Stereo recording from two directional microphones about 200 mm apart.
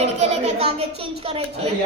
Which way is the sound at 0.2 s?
35° right (ahead or behind).